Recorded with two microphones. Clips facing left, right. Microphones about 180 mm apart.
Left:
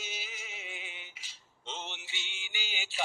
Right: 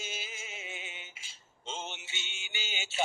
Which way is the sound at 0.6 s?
25° right (ahead or behind).